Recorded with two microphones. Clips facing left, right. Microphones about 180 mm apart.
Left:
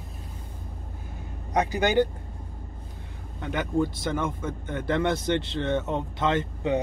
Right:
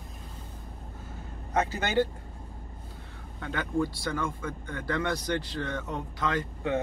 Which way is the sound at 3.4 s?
20° left (ahead or behind).